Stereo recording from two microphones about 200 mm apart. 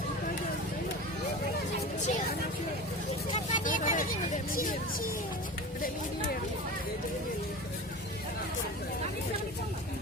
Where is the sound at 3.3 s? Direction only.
40° left (ahead or behind).